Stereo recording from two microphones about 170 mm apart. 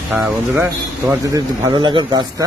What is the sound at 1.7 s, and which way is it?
Speech, 30° right (ahead or behind).